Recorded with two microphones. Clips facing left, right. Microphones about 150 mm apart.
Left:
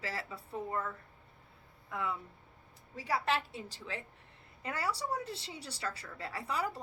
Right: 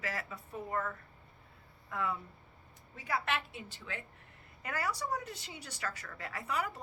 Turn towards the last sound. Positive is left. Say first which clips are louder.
# left 1 dB
turn(degrees=30)  # may be behind; listen again after turning